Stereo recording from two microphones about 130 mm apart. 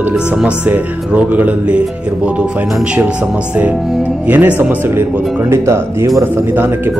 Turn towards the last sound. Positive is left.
turn(degrees=-15)  # may be behind; listen again after turning